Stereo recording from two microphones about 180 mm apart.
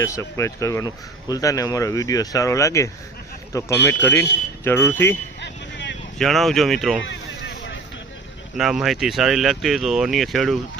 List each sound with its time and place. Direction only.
0.0 s speech: 15° left (ahead or behind)
5.4 s vehicle: 80° left
6.1 s speech: centre (ahead or behind)
7.0 s boat: 85° left
8.5 s speech: 5° right (ahead or behind)